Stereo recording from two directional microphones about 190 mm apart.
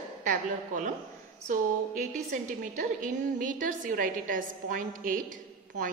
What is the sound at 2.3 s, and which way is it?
A woman's voice, 45° right (ahead or behind).